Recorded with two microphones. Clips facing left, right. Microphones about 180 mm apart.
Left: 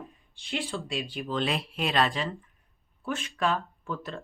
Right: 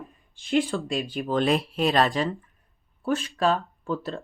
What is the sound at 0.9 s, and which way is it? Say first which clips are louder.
Speech: right 5 dB; 45° right (ahead or behind).